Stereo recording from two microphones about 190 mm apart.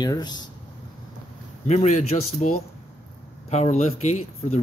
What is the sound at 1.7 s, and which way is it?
Speech, 40° left (ahead or behind).